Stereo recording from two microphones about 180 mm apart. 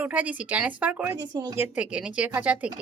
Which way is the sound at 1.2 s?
20° right (ahead or behind).